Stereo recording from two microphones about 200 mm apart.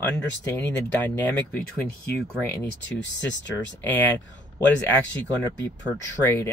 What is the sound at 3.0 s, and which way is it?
Speech, 65° left (ahead or behind).